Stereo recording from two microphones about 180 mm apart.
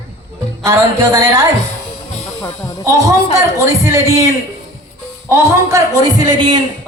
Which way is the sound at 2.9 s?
20° right (ahead or behind).